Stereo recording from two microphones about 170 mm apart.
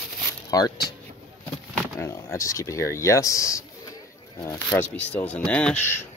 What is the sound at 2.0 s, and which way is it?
Speech, 15° left (ahead or behind).